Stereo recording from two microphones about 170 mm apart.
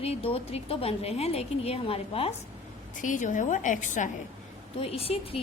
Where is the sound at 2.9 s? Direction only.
50° left (ahead or behind).